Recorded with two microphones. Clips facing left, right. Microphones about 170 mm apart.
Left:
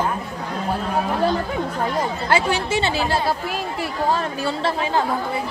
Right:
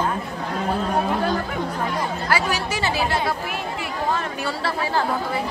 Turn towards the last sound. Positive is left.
turn(degrees=25)  # may be behind; listen again after turning